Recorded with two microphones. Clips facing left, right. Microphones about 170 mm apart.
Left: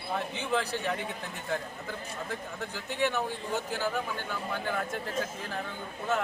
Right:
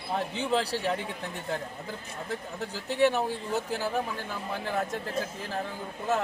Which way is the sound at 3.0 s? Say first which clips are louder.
Right 6 dB; 35° right (ahead or behind).